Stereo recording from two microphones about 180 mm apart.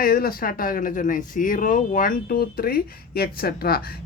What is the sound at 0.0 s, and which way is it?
Speech, 55° left (ahead or behind).